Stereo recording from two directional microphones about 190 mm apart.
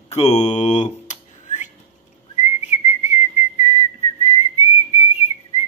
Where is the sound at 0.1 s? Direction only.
35° left (ahead or behind).